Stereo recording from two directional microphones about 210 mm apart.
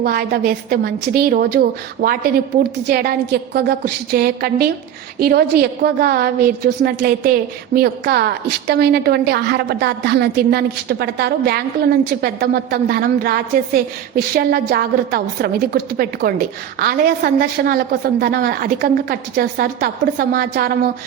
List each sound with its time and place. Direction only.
0.0 s a woman's voice: 45° right (ahead or behind)